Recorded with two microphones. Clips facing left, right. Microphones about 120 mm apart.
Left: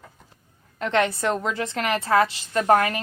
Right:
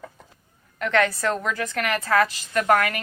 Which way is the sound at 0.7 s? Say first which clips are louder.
Even; 25° left (ahead or behind).